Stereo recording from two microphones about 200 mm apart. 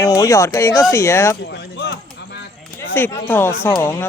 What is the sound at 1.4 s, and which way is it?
Speech, 60° left (ahead or behind).